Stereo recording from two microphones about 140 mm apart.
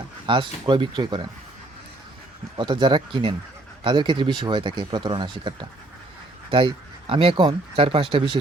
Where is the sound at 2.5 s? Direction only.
35° right (ahead or behind).